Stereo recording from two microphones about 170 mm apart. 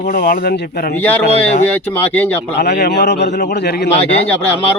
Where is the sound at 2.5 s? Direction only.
75° left (ahead or behind).